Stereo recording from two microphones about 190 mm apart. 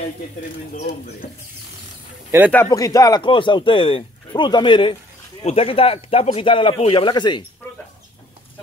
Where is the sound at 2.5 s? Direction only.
15° left (ahead or behind).